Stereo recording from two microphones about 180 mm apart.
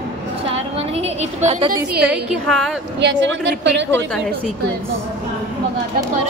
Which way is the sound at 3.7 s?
85° right.